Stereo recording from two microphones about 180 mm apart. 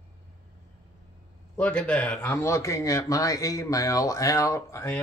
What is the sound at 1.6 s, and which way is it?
Speech, 5° left (ahead or behind).